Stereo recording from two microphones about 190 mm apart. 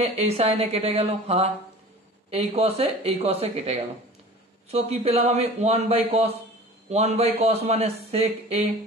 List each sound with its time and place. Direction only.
0.0 s a man's voice: 35° right (ahead or behind)